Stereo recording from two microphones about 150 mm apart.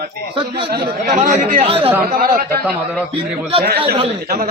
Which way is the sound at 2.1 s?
75° right (ahead or behind).